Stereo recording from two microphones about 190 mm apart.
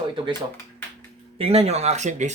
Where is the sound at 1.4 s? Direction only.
30° right (ahead or behind).